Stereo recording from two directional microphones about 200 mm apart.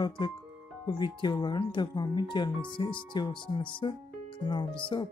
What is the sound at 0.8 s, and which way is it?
Speech, 20° left (ahead or behind).